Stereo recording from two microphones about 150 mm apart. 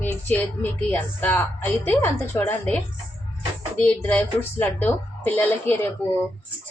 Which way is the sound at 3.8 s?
10° left (ahead or behind).